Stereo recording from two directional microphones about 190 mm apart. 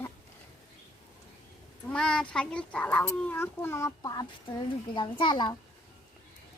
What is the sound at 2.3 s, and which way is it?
A child's voice, 5° left (ahead or behind).